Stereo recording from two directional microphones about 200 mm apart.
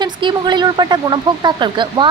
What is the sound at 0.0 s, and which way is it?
Speech, 20° right (ahead or behind).